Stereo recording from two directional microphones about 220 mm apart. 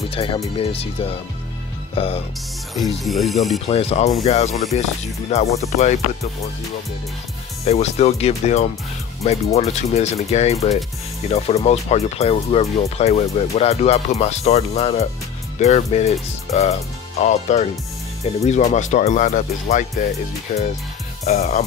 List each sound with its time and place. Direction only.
0.1 s speech: 25° left (ahead or behind)
2.7 s speech: centre (ahead or behind)
3.6 s speech: 25° left (ahead or behind)
7.6 s speech: 30° left (ahead or behind)